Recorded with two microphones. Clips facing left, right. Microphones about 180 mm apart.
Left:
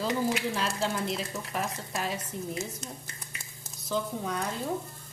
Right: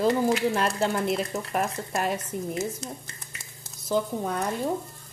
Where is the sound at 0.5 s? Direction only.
55° right (ahead or behind).